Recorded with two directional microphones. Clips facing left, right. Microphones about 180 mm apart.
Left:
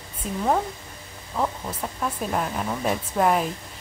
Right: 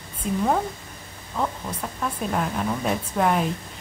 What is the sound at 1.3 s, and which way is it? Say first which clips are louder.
A woman's voice: left 1 dB; 5° left (ahead or behind).